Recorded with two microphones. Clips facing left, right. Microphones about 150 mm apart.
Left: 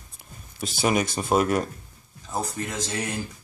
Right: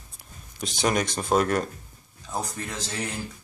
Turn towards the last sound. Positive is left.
turn(degrees=10)  # may be behind; listen again after turning